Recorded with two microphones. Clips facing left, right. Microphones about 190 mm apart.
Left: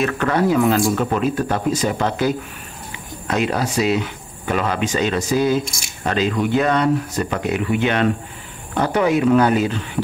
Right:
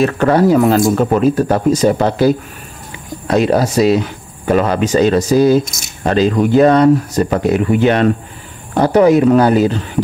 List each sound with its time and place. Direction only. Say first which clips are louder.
0.0 s speech: right 7 dB; 35° right (ahead or behind)